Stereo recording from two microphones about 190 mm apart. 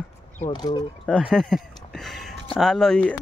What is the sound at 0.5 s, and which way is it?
Speech, 20° left (ahead or behind).